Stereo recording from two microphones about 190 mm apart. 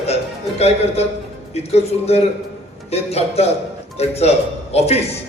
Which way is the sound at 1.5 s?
35° left (ahead or behind).